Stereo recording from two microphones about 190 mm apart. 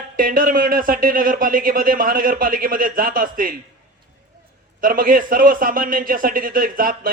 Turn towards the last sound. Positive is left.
turn(degrees=-50)  # may be behind; listen again after turning